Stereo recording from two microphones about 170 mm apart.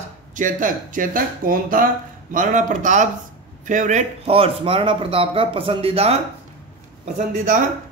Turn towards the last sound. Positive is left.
turn(degrees=-50)  # may be behind; listen again after turning